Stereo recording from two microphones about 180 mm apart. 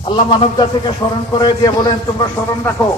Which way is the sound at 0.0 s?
30° left (ahead or behind).